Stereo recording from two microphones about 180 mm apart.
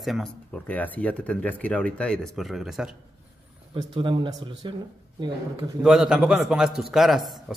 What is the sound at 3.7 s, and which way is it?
A man's voice, 30° right (ahead or behind).